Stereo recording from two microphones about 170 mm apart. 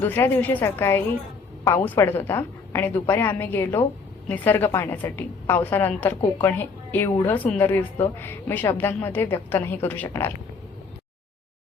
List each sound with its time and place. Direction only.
0.0 s a woman's voice: 15° left (ahead or behind)
7.3 s a woman's voice: 10° left (ahead or behind)